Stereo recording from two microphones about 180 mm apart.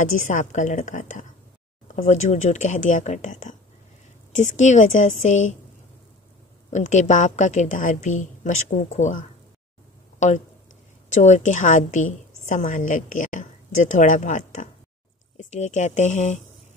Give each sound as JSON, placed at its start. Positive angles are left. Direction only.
{"t": 0.0, "sound": "a woman's voice", "side_deg": 45}
{"t": 6.7, "sound": "a woman's voice", "side_deg": 40}